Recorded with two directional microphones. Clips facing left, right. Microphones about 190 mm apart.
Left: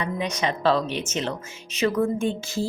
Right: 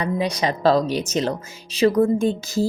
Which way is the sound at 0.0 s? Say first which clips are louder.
Right 4 dB; 35° right (ahead or behind).